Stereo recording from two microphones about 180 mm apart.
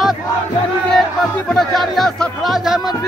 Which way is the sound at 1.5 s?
Centre (ahead or behind).